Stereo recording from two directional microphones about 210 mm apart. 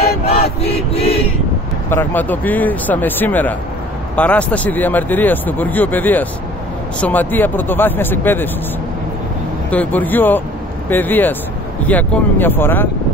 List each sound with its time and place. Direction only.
0.4 s chant: 30° left (ahead or behind)
1.9 s speech: 10° left (ahead or behind)
9.7 s speech: 10° left (ahead or behind)